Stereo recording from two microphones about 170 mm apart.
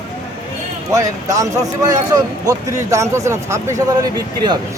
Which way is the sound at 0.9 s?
20° right (ahead or behind).